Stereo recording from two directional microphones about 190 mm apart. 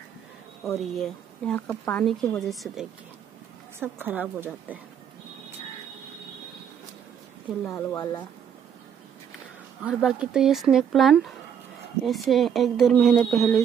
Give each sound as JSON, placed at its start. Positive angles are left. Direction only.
{"t": 0.7, "sound": "a woman's voice", "side_deg": 0}
{"t": 7.7, "sound": "speech", "side_deg": 20}
{"t": 9.8, "sound": "speech", "side_deg": -5}